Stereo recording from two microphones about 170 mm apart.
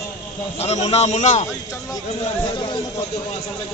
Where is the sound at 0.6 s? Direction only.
40° left (ahead or behind).